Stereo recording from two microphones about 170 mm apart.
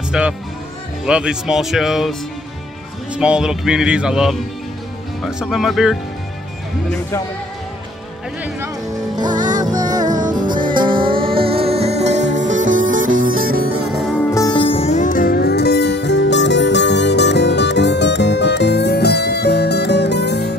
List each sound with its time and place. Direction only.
0.1 s speech: 5° right (ahead or behind)
3.2 s speech: 5° right (ahead or behind)
9.1 s music: 25° right (ahead or behind); by 13.7 s 60° right (ahead or behind)
13.9 s music: 5° left (ahead or behind)
14.6 s music: 35° left (ahead or behind); by 20.5 s 80° left